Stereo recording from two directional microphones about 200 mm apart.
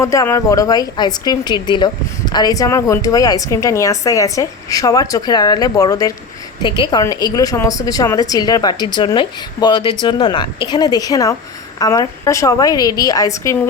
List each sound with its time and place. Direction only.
0.0 s a woman's voice: 15° left (ahead or behind)